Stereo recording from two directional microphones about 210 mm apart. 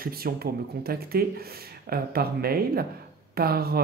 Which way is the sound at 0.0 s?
45° right (ahead or behind).